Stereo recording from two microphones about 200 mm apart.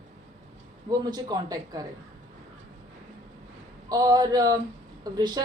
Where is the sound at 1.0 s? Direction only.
20° right (ahead or behind).